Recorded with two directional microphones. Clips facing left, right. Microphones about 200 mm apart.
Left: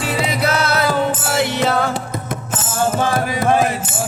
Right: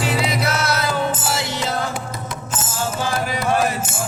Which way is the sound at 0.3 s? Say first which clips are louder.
Left 3 dB; 60° left (ahead or behind).